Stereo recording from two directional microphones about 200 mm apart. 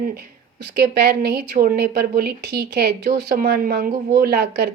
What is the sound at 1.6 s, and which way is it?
A woman's voice, 50° right (ahead or behind).